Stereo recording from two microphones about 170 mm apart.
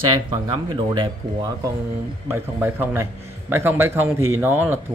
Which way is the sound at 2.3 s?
10° right (ahead or behind).